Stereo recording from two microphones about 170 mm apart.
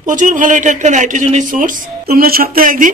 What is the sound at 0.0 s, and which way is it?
Speech, 50° right (ahead or behind).